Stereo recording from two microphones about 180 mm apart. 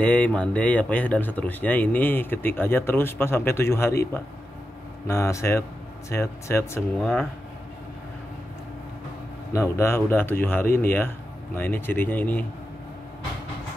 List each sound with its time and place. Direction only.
0.0 s speech: 5° left (ahead or behind)
7.0 s speech: centre (ahead or behind)
9.5 s speech: 15° left (ahead or behind)